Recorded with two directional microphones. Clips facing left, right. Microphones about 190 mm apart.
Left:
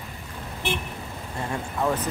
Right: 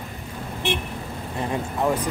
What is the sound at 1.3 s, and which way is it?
Speech, 15° right (ahead or behind).